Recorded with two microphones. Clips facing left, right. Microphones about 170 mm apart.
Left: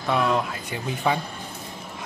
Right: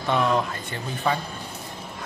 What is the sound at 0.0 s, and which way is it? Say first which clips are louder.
Speech: even; centre (ahead or behind).